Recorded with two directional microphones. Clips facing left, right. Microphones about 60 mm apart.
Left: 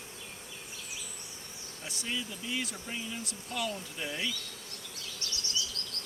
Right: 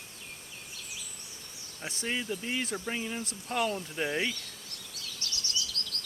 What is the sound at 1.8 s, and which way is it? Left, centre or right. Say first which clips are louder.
Speech: right 4 dB; right.